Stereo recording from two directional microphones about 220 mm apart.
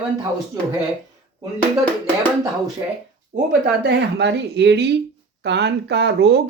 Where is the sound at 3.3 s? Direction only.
45° right (ahead or behind).